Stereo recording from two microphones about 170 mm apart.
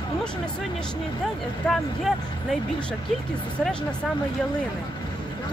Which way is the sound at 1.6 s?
Centre (ahead or behind).